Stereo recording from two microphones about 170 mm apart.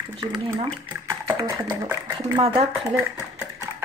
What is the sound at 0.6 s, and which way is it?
Speech, 25° right (ahead or behind).